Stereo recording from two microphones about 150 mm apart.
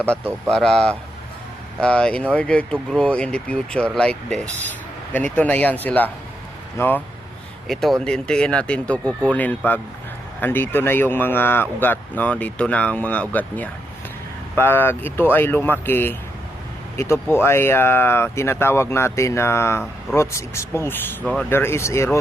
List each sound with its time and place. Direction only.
0.5 s speech: 5° left (ahead or behind)
7.7 s speech: centre (ahead or behind); by 22.2 s 20° left (ahead or behind)